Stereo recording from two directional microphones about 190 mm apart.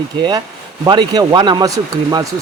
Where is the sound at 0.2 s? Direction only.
20° right (ahead or behind).